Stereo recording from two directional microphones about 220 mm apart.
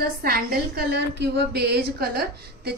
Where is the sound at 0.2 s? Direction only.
45° right (ahead or behind).